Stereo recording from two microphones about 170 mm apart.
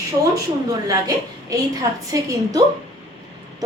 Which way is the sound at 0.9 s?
20° right (ahead or behind).